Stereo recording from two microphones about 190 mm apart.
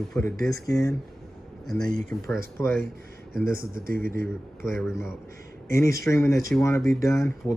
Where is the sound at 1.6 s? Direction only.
5° left (ahead or behind).